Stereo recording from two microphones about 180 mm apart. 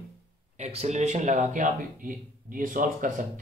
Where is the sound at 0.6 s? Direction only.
35° right (ahead or behind).